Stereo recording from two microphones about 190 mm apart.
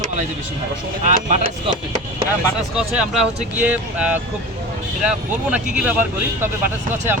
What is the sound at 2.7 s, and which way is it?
Speech, 5° right (ahead or behind).